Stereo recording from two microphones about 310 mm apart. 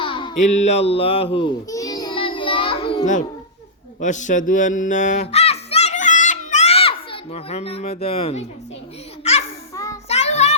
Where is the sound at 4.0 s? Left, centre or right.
Left.